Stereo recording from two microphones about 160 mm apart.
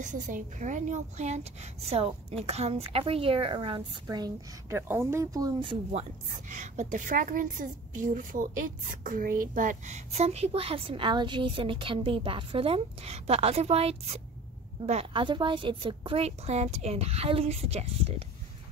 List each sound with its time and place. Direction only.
0.0 s a woman's voice: 50° right (ahead or behind); by 4.7 s 25° right (ahead or behind)
4.7 s speech: 15° right (ahead or behind)
6.5 s a woman's voice: 50° right (ahead or behind)